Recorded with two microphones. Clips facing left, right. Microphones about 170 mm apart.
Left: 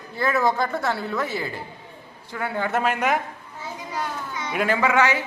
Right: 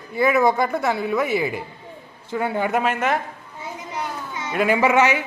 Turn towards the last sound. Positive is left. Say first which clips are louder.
# right 3 dB
turn(degrees=-20)  # may be behind; listen again after turning